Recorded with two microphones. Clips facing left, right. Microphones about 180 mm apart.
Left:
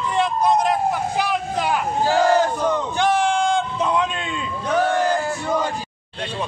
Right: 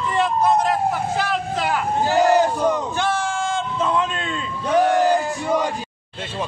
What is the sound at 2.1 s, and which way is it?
Battle cry, 15° right (ahead or behind).